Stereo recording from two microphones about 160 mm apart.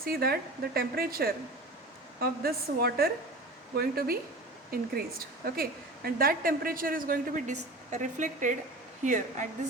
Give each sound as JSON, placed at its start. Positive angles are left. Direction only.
{"t": 0.0, "sound": "a woman's voice", "side_deg": -70}